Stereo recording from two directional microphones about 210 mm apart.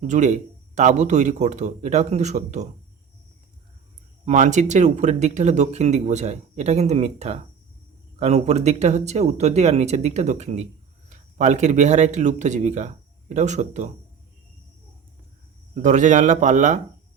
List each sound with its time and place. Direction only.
0.0 s speech: 35° right (ahead or behind)
4.3 s speech: 35° right (ahead or behind)
15.7 s speech: 35° right (ahead or behind)